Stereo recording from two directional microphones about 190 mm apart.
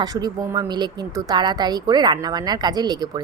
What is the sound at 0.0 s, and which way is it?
A woman's voice, 20° right (ahead or behind).